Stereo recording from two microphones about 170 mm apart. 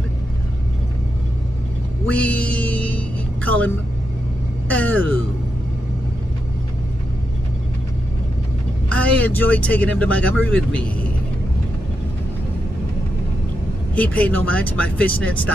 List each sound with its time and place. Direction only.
2.0 s music: 10° left (ahead or behind)
4.6 s a sound: 10° left (ahead or behind)
8.8 s speech: 10° left (ahead or behind)
13.9 s speech: 10° left (ahead or behind)